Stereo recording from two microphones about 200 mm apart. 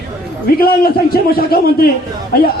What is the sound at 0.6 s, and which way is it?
A woman's voice, 50° left (ahead or behind).